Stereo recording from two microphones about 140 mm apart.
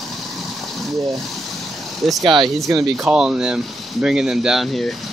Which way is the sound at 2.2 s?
35° right (ahead or behind).